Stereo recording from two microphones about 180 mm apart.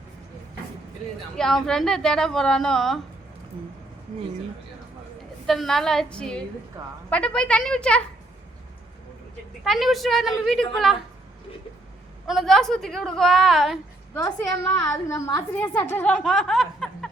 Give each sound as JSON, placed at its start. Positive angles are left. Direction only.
{"t": 1.4, "sound": "a woman's voice", "side_deg": 5}
{"t": 5.5, "sound": "a woman's voice", "side_deg": 0}
{"t": 9.6, "sound": "a woman's voice", "side_deg": 0}
{"t": 12.2, "sound": "a woman's voice", "side_deg": 0}
{"t": 14.1, "sound": "a woman's voice", "side_deg": 20}